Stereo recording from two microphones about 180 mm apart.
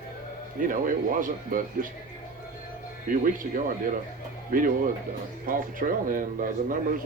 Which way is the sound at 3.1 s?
50° right (ahead or behind).